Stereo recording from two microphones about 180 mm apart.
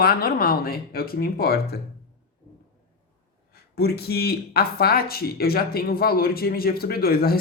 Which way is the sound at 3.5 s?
60° left (ahead or behind).